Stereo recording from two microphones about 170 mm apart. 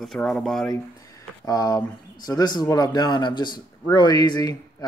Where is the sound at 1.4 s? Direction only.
20° left (ahead or behind).